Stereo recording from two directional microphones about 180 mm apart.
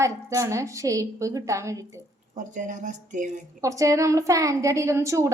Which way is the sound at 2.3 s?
45° right (ahead or behind).